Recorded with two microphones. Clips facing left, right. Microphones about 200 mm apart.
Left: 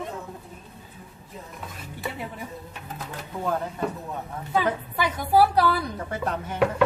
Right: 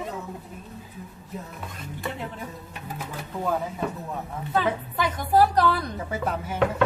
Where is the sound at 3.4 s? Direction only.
5° right (ahead or behind).